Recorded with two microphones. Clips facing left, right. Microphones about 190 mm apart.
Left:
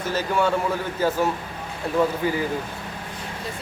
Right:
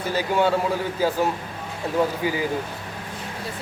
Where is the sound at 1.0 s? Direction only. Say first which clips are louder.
Even; 10° right (ahead or behind).